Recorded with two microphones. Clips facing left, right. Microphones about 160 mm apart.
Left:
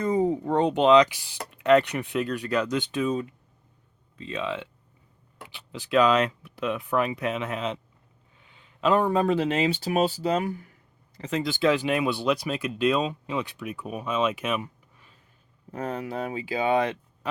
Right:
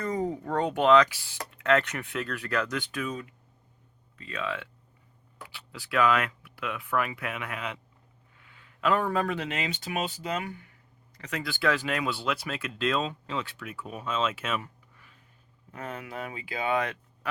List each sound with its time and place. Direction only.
0.0 s speech: 20° left (ahead or behind); by 10.7 s 35° left (ahead or behind)
11.2 s speech: 25° left (ahead or behind)
15.7 s speech: 35° left (ahead or behind)